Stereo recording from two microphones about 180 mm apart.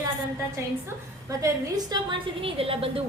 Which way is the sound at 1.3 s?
20° right (ahead or behind).